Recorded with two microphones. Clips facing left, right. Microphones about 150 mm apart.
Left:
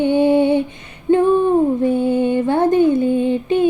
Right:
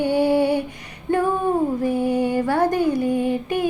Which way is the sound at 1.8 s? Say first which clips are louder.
Left 4 dB; 25° left (ahead or behind).